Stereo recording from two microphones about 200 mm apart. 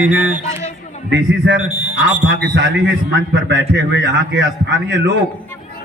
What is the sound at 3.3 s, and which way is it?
A man's voice, 65° right (ahead or behind).